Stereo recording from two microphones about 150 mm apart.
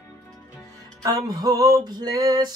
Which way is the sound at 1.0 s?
25° right (ahead or behind).